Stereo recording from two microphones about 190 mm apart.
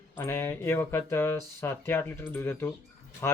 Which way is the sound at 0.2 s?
15° left (ahead or behind).